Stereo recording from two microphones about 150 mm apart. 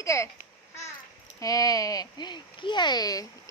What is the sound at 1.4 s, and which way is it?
Speech, 25° left (ahead or behind).